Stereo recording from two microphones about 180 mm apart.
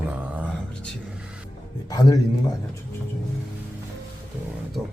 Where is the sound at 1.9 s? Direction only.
20° left (ahead or behind).